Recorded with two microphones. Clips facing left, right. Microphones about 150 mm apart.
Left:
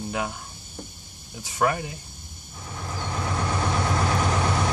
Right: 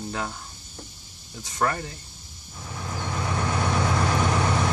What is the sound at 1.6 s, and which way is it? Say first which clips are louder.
Speech: left 2 dB; 10° left (ahead or behind).